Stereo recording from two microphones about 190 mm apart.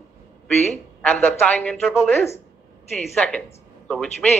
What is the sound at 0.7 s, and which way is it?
Speech, 10° left (ahead or behind).